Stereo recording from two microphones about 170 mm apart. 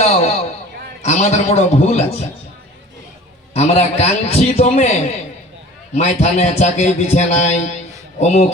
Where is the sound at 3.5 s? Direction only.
40° left (ahead or behind).